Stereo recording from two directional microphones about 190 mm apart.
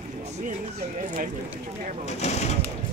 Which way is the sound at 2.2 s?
35° left (ahead or behind).